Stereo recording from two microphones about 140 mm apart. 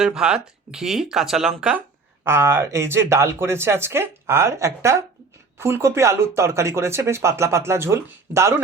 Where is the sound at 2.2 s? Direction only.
15° right (ahead or behind).